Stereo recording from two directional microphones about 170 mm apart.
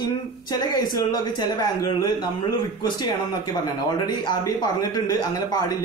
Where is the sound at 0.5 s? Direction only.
20° left (ahead or behind).